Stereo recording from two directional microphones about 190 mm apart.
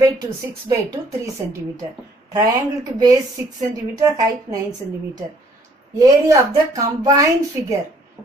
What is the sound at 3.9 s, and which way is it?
Speech, 20° right (ahead or behind).